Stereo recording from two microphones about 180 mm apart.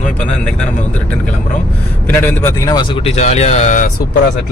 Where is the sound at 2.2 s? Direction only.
15° left (ahead or behind); by 3.9 s 45° left (ahead or behind).